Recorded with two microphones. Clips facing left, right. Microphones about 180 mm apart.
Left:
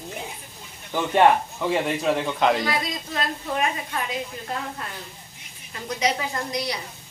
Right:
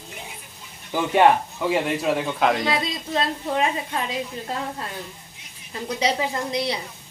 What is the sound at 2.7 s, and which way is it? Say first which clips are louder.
A woman's voice: right 3 dB; 25° right (ahead or behind).